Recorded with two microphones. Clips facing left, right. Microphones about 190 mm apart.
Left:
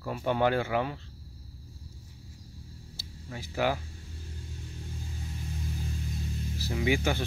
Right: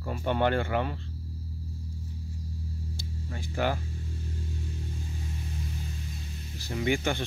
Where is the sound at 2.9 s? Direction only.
5° left (ahead or behind).